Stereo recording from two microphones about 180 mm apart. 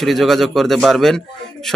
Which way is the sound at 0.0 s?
Centre (ahead or behind).